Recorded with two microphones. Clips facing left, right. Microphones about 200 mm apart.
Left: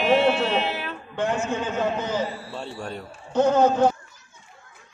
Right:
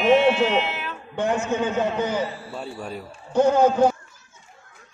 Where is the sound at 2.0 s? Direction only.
5° right (ahead or behind).